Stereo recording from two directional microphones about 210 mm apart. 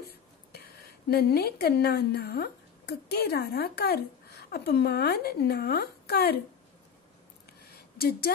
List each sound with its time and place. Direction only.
0.5 s a woman's voice: 50° left (ahead or behind)
8.0 s speech: 45° left (ahead or behind)